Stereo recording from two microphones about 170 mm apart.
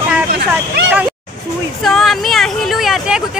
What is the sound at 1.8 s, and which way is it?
Speech, centre (ahead or behind).